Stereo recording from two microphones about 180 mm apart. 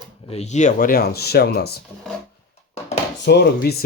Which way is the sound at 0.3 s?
40° left (ahead or behind).